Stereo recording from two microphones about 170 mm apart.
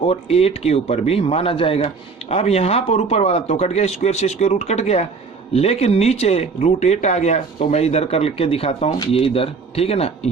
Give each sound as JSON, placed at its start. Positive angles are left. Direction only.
{"t": 0.0, "sound": "speech", "side_deg": 35}